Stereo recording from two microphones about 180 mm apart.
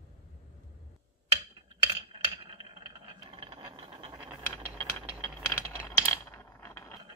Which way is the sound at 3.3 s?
30° right (ahead or behind).